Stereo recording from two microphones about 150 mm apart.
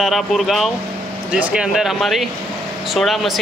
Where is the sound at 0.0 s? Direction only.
Centre (ahead or behind).